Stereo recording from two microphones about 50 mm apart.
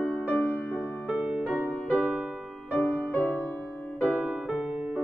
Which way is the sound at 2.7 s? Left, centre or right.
Left.